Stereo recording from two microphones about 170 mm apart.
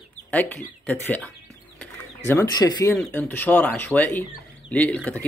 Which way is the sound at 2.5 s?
20° left (ahead or behind).